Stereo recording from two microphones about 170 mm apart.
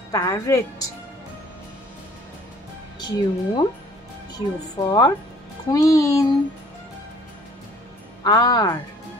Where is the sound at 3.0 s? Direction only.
25° left (ahead or behind).